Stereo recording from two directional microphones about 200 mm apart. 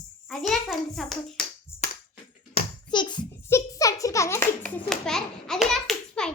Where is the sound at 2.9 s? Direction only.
20° left (ahead or behind); by 6.3 s 5° left (ahead or behind).